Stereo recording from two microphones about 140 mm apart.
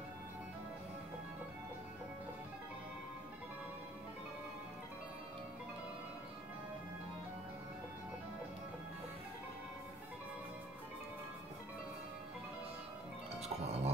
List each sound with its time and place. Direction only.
13.4 s music: 50° right (ahead or behind)